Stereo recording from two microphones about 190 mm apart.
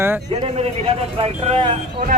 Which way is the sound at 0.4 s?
30° right (ahead or behind).